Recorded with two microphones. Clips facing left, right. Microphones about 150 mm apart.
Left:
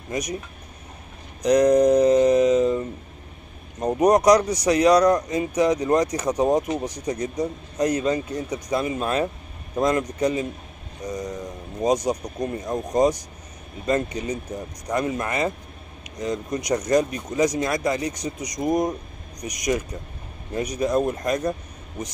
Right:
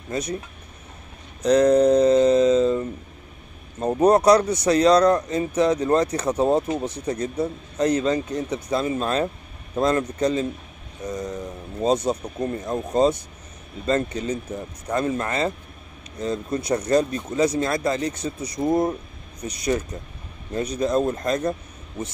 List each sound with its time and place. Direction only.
0.1 s speech: 15° left (ahead or behind)
1.4 s speech: 15° left (ahead or behind)
3.8 s speech: 15° left (ahead or behind)
7.9 s speech: 30° right (ahead or behind)
8.3 s speech: 10° left (ahead or behind)